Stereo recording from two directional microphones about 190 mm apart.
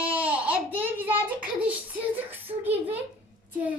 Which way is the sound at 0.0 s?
10° right (ahead or behind).